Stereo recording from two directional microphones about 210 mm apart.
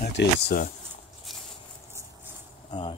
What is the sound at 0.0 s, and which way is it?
Speech, 50° left (ahead or behind).